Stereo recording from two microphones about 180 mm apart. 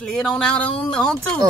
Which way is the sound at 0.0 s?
5° left (ahead or behind).